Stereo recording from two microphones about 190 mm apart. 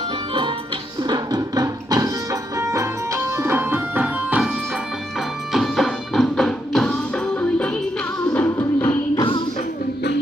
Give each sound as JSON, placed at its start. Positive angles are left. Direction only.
{"t": 1.0, "sound": "music", "side_deg": -20}
{"t": 8.9, "sound": "music", "side_deg": 25}